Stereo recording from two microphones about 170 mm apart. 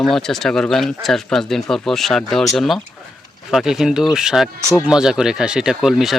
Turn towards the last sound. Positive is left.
turn(degrees=0)  # may be behind; listen again after turning